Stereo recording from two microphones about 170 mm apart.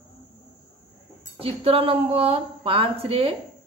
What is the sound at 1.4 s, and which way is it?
A woman's voice, 35° right (ahead or behind).